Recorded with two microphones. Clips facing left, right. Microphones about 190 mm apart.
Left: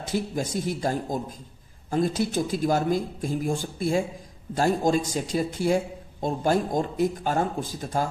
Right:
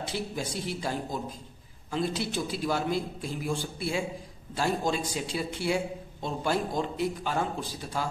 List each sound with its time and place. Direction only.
0.0 s a man's voice: 45° left (ahead or behind)